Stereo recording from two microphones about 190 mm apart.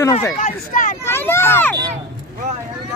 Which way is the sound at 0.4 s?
45° left (ahead or behind).